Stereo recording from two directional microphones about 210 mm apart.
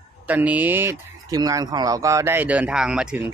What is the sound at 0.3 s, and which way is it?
Speech, 10° right (ahead or behind).